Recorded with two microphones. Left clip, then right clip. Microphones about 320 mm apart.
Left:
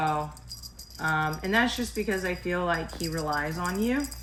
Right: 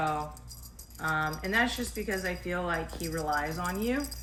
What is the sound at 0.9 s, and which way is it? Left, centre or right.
Speech, left.